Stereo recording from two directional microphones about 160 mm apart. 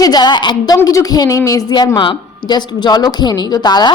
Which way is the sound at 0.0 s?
25° left (ahead or behind).